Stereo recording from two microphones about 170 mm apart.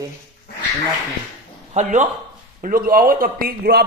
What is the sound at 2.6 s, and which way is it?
A man's voice, 55° right (ahead or behind).